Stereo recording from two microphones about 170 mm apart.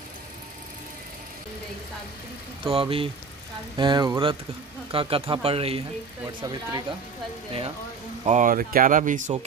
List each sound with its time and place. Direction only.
2.6 s speech: 30° right (ahead or behind)
6.4 s speech: 25° right (ahead or behind)
8.3 s speech: 50° right (ahead or behind)